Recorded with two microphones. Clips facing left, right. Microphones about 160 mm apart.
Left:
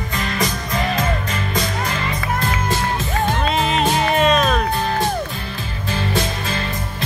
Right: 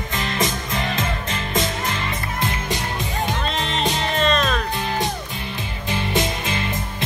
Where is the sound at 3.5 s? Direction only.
5° left (ahead or behind).